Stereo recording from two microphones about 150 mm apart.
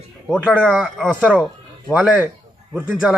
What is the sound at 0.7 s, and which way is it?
A man's voice, centre (ahead or behind).